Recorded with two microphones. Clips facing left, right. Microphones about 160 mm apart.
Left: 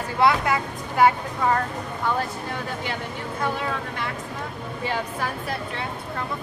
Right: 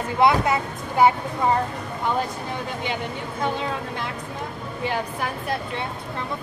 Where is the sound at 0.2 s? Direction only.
20° right (ahead or behind).